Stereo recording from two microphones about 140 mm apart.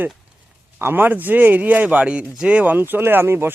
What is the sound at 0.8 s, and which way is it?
Speech, 15° right (ahead or behind).